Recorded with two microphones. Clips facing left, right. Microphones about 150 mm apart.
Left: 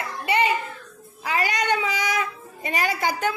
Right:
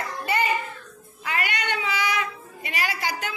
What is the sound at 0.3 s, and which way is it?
Child singing, 25° left (ahead or behind).